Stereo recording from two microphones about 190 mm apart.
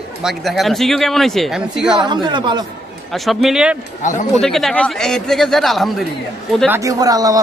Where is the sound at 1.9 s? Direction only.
25° right (ahead or behind).